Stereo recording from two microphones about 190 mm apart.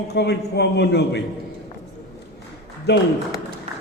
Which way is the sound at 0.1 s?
60° left (ahead or behind).